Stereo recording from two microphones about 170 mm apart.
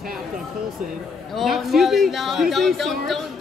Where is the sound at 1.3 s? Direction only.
Centre (ahead or behind).